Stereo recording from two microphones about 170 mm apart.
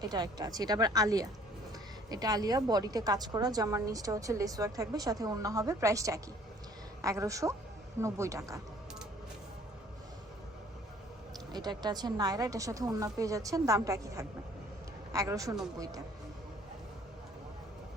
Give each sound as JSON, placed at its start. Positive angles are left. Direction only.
{"t": 0.1, "sound": "a woman's voice", "side_deg": -25}
{"t": 11.5, "sound": "a woman's voice", "side_deg": -25}